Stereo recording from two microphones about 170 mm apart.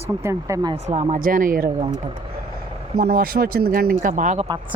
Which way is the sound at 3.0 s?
65° right (ahead or behind).